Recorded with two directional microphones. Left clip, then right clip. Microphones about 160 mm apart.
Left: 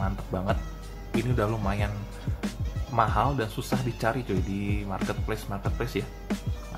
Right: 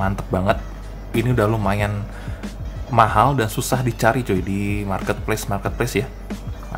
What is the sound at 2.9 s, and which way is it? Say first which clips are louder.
Speech: right 10 dB; 20° right (ahead or behind).